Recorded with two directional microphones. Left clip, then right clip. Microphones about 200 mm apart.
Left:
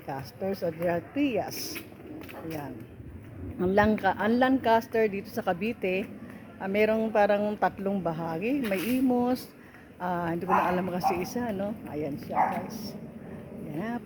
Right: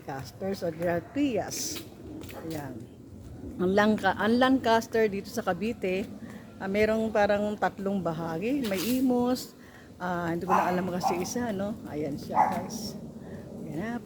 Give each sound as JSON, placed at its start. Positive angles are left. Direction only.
{"t": 0.1, "sound": "speech", "side_deg": 15}
{"t": 3.6, "sound": "speech", "side_deg": 5}